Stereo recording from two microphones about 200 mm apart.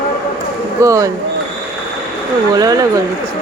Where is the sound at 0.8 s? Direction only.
15° right (ahead or behind).